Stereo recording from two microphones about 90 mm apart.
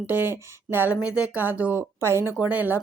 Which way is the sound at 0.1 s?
25° right (ahead or behind).